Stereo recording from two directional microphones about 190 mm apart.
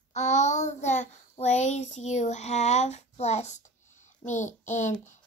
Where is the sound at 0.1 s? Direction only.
40° left (ahead or behind).